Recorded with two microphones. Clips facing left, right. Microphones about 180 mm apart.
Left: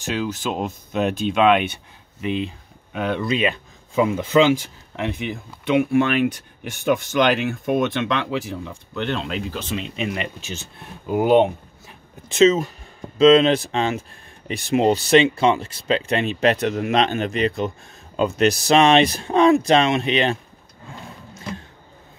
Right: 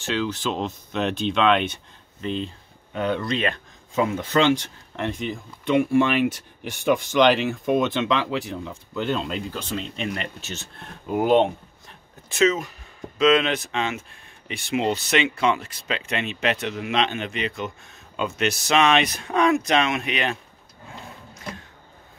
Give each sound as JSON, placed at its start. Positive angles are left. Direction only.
{"t": 0.1, "sound": "speech", "side_deg": 10}
{"t": 12.3, "sound": "speech", "side_deg": 25}